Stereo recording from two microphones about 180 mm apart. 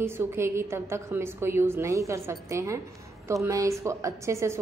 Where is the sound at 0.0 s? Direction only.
15° right (ahead or behind).